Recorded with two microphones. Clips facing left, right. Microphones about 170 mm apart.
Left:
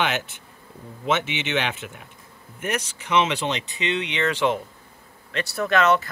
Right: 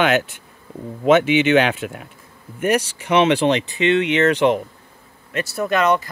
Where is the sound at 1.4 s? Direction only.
60° right (ahead or behind).